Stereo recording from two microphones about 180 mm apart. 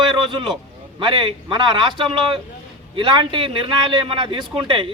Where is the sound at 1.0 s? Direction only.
25° right (ahead or behind).